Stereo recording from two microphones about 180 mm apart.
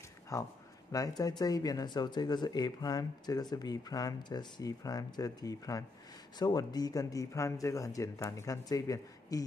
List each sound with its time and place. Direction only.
0.9 s speech: 20° left (ahead or behind)